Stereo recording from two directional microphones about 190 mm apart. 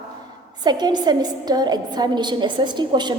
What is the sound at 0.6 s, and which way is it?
A woman's voice, 20° right (ahead or behind).